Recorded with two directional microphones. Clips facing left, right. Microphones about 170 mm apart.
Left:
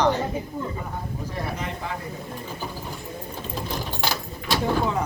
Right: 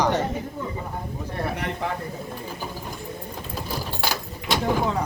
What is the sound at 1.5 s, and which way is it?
Speech, 65° right (ahead or behind).